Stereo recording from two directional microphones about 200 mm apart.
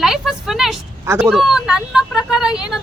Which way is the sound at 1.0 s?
15° right (ahead or behind).